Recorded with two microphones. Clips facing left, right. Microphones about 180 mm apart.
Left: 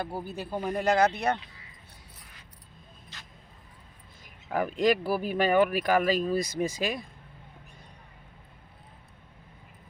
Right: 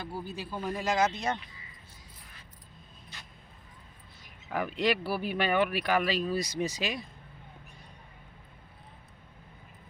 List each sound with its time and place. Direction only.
0.0 s speech: 55° left (ahead or behind)
4.2 s speech: 45° left (ahead or behind)